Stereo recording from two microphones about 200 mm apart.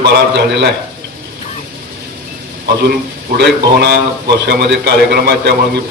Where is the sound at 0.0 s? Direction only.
55° right (ahead or behind).